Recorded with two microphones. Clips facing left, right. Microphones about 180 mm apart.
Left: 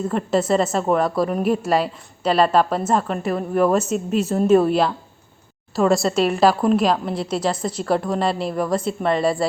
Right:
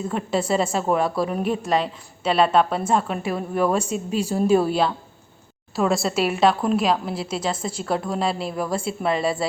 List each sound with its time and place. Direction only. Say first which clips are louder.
0.1 s a woman's voice: left 3 dB; centre (ahead or behind)